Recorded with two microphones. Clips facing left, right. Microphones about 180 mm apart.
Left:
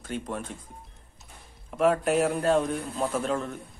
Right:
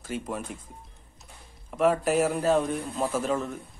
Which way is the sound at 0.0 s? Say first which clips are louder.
Even; 5° right (ahead or behind).